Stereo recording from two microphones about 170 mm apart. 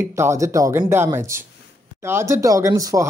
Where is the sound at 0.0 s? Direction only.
15° right (ahead or behind).